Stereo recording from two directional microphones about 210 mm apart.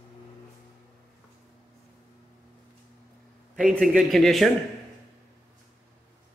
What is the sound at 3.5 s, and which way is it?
Speech, centre (ahead or behind).